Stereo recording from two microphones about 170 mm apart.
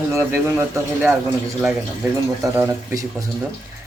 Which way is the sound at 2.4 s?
15° right (ahead or behind).